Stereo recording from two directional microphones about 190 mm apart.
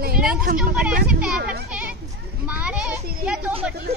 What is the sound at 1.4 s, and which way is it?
Children playing, 60° right (ahead or behind).